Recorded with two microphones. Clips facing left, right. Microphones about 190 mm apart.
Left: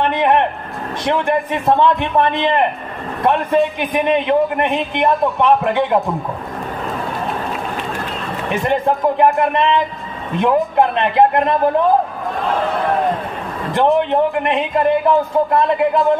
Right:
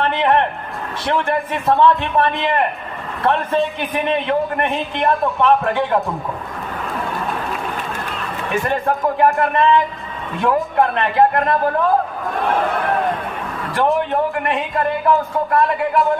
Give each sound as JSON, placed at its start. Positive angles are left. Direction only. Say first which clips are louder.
{"t": 0.0, "sound": "a man's voice", "louder": "left 2 dB", "side_deg": 15}
{"t": 8.5, "sound": "speech", "louder": "left 2 dB", "side_deg": 20}
{"t": 13.7, "sound": "speech", "louder": "left 3 dB", "side_deg": 20}